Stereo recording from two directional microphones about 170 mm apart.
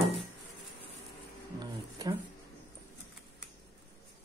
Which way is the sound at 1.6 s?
25° right (ahead or behind).